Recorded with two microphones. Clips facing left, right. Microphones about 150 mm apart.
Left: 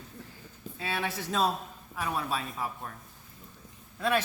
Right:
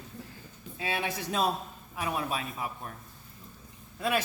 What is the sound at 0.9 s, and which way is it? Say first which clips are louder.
Speech: even; 15° right (ahead or behind).